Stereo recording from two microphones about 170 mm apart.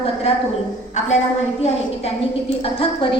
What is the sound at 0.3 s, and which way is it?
Speech, 35° left (ahead or behind).